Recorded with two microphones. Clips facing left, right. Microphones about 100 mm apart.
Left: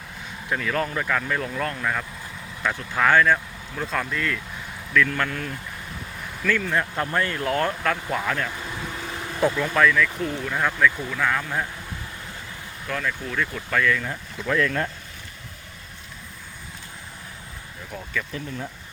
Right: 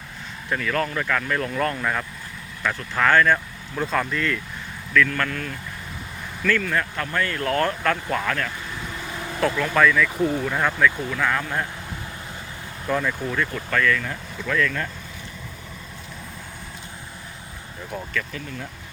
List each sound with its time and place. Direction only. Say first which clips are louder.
0.5 s speech: right 1 dB; 10° left (ahead or behind)
2.7 s speech: even; 10° left (ahead or behind)
6.4 s speech: right 1 dB; 10° left (ahead or behind)
7.3 s speech: right 1 dB; 10° left (ahead or behind)
9.7 s speech: right 1 dB; centre (ahead or behind)
12.9 s speech: right 4 dB; 10° right (ahead or behind); by 14.8 s 25° left (ahead or behind)